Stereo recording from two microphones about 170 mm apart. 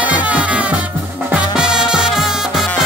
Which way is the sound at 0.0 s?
10° right (ahead or behind).